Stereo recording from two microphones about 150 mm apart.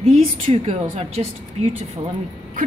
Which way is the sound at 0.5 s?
45° right (ahead or behind).